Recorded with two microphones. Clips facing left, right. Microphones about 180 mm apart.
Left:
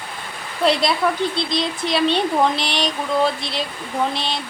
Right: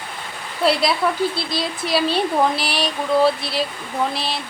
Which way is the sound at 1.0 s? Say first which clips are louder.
Even; centre (ahead or behind).